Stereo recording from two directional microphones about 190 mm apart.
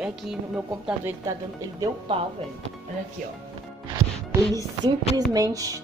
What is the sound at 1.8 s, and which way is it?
Speech, 30° right (ahead or behind).